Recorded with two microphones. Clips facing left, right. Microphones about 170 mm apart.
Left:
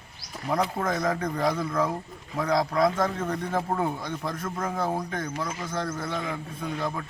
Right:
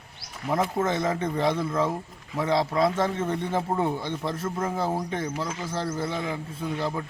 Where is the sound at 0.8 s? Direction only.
25° right (ahead or behind).